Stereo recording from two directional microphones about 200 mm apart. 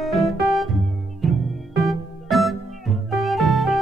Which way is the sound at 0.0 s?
Centre (ahead or behind).